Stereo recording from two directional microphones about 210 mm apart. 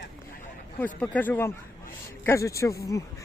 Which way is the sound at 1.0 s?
5° left (ahead or behind).